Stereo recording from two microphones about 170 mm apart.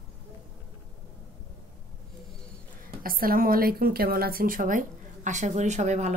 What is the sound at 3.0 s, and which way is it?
A woman's voice, 55° right (ahead or behind).